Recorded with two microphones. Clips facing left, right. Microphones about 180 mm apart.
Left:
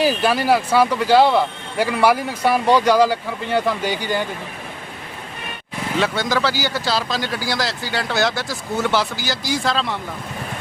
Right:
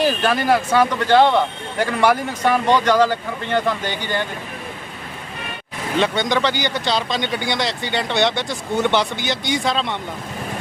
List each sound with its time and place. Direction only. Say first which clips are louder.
0.0 s speech: left 1 dB; 10° left (ahead or behind)
6.0 s speech: right 1 dB; 5° left (ahead or behind)